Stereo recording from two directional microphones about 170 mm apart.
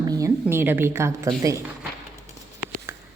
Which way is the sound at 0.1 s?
15° right (ahead or behind).